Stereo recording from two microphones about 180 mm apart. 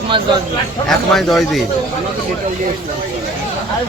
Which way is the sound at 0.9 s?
Centre (ahead or behind).